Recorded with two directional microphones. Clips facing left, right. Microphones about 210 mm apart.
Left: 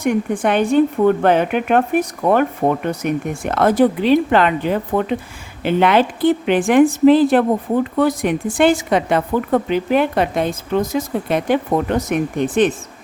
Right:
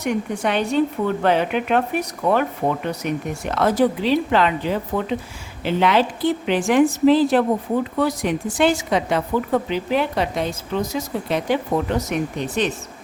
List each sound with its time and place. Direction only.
0.0 s a woman's voice: 50° left (ahead or behind)